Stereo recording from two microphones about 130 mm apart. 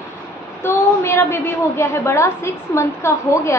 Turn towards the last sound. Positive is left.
turn(degrees=20)  # may be behind; listen again after turning